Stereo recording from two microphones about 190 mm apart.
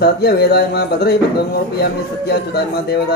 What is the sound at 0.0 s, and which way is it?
A man's voice, 55° left (ahead or behind).